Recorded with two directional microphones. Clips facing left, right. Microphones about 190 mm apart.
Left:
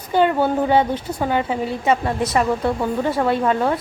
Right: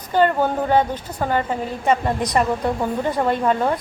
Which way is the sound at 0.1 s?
10° left (ahead or behind).